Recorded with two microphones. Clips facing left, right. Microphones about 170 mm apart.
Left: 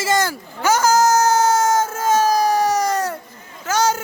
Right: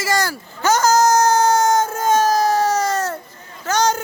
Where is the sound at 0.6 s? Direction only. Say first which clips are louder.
Right 1 dB; 10° left (ahead or behind).